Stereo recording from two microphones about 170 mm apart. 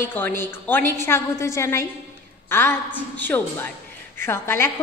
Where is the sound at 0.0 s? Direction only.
10° left (ahead or behind).